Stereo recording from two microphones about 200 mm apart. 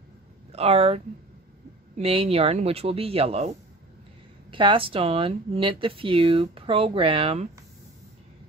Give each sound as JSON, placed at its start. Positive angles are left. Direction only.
{"t": 0.5, "sound": "speech", "side_deg": -30}
{"t": 4.5, "sound": "speech", "side_deg": -25}